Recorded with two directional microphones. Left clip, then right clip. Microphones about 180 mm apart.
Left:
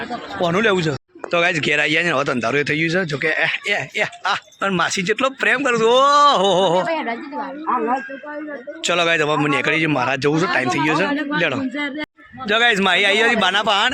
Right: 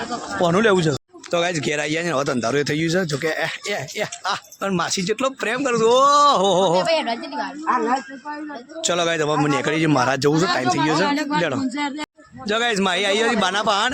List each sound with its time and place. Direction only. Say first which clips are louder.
0.3 s a man's voice: even; 25° right (ahead or behind)
1.3 s speech: left 4 dB; 10° right (ahead or behind)
6.8 s speech: right 2 dB; 40° right (ahead or behind)
7.7 s speech: even; 5° left (ahead or behind)
8.8 s a man's voice: left 3 dB; 15° right (ahead or behind)